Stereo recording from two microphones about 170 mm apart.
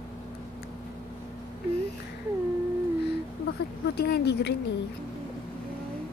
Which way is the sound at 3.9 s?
75° left (ahead or behind).